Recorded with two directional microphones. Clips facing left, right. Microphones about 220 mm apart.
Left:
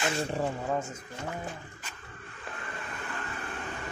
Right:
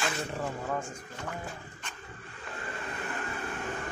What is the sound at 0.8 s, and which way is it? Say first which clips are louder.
Speech: left 2 dB; 20° left (ahead or behind).